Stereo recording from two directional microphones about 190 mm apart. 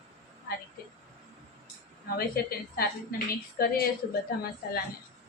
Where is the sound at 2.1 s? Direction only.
50° left (ahead or behind).